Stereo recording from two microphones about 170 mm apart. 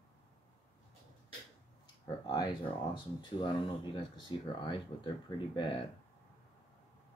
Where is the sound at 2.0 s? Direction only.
25° left (ahead or behind).